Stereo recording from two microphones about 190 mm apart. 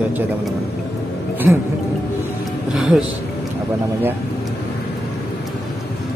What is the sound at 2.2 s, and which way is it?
Music, centre (ahead or behind).